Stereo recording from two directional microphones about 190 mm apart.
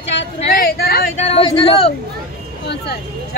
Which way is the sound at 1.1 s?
30° left (ahead or behind).